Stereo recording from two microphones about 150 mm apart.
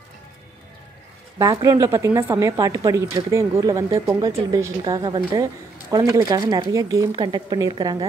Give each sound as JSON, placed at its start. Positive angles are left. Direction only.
{"t": 1.4, "sound": "speech", "side_deg": -25}